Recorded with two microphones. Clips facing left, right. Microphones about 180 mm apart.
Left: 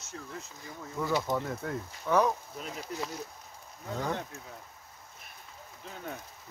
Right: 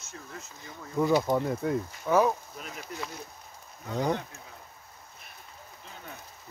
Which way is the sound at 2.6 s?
30° left (ahead or behind).